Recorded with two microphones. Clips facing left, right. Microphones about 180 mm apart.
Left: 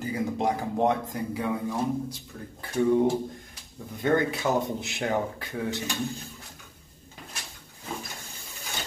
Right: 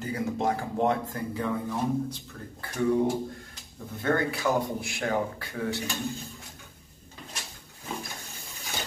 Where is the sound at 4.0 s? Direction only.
20° left (ahead or behind).